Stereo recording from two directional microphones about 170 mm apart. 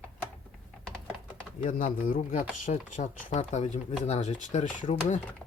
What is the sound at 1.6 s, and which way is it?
Speech, 50° left (ahead or behind).